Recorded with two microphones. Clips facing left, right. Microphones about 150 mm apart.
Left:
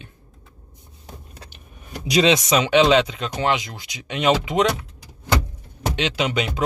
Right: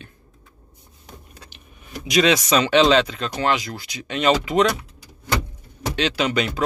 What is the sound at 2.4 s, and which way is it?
Speech, 15° left (ahead or behind).